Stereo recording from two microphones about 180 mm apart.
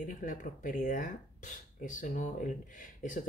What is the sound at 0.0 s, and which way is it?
Speech, 45° left (ahead or behind).